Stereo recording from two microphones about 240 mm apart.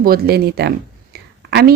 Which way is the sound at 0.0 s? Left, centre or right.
Right.